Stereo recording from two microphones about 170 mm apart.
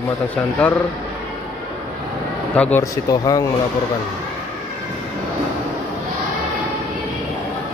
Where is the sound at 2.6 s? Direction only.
15° left (ahead or behind).